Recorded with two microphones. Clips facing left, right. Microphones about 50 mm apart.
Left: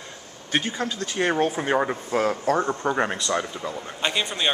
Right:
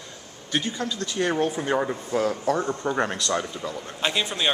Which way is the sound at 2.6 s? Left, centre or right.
Centre.